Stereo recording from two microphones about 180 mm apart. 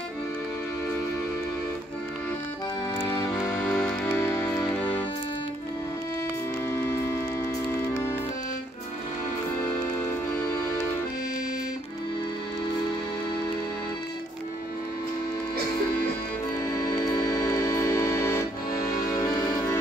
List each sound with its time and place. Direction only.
3.0 s music: 15° left (ahead or behind)
3.3 s music: centre (ahead or behind)
6.7 s music: 15° left (ahead or behind)
9.6 s music: 15° left (ahead or behind)
16.7 s music: 20° left (ahead or behind)